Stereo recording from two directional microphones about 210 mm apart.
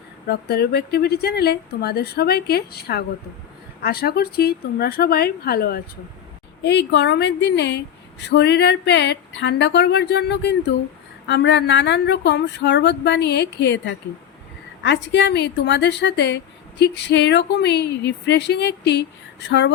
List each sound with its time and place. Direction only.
0.3 s a woman's voice: 50° left (ahead or behind)